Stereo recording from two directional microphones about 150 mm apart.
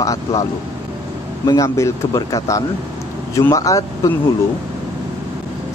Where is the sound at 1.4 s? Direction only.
20° left (ahead or behind).